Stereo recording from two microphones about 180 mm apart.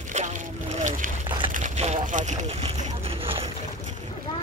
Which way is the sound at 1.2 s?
25° right (ahead or behind).